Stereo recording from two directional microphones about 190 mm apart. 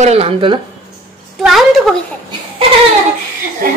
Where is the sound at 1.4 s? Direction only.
Centre (ahead or behind).